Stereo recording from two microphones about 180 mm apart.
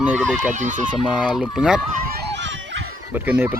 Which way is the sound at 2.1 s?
70° right (ahead or behind).